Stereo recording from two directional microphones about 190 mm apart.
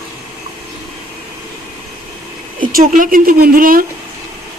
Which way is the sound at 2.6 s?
45° right (ahead or behind).